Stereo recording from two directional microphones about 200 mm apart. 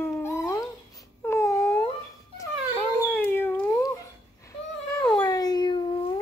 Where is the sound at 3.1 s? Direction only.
10° left (ahead or behind).